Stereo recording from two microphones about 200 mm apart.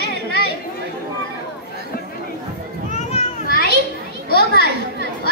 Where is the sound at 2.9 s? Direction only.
40° left (ahead or behind).